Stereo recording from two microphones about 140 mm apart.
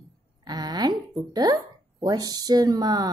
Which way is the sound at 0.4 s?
30° right (ahead or behind).